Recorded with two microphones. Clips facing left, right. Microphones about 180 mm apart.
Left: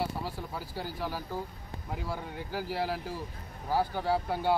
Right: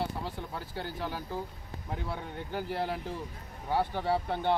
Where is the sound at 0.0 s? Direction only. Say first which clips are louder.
Left 1 dB; 5° left (ahead or behind).